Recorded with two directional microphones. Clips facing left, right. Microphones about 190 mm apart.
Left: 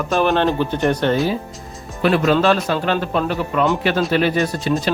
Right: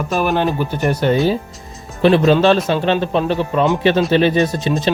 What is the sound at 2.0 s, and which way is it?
Speech, 25° right (ahead or behind).